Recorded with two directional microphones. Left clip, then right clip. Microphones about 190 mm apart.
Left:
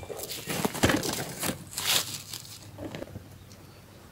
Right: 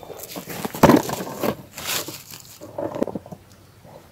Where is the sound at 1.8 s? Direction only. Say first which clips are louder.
Even; 20° left (ahead or behind).